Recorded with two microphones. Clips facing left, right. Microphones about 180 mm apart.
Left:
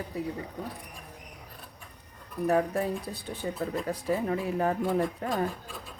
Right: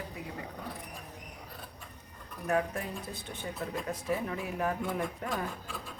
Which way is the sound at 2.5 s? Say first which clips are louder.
Left 5 dB; 35° left (ahead or behind).